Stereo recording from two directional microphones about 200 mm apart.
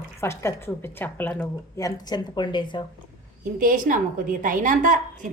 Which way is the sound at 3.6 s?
45° right (ahead or behind).